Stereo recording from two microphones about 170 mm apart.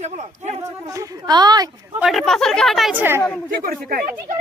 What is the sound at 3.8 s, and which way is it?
Speech, 60° right (ahead or behind).